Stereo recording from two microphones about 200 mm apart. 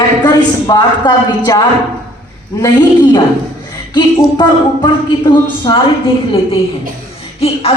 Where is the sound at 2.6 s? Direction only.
20° left (ahead or behind).